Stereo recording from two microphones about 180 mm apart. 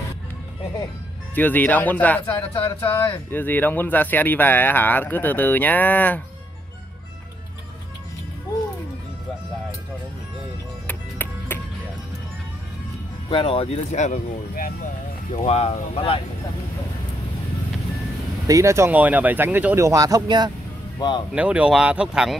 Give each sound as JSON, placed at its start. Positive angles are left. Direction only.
{"t": 1.3, "sound": "speech", "side_deg": 10}
{"t": 10.9, "sound": "music", "side_deg": 10}
{"t": 13.3, "sound": "speech", "side_deg": 30}
{"t": 15.3, "sound": "speech", "side_deg": 35}
{"t": 18.5, "sound": "speech", "side_deg": -15}
{"t": 21.3, "sound": "speech", "side_deg": -5}